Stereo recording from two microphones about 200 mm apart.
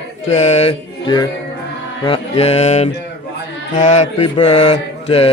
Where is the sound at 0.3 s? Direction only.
35° left (ahead or behind).